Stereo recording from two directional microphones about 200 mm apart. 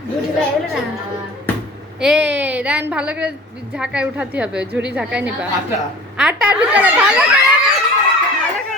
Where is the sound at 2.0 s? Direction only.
5° right (ahead or behind).